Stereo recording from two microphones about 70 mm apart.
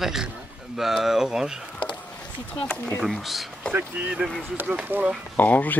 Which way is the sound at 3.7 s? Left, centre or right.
Right.